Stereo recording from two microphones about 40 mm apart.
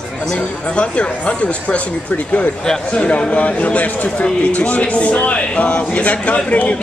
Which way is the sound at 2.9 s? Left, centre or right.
Left.